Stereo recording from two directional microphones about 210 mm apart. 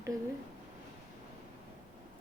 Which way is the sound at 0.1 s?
15° right (ahead or behind).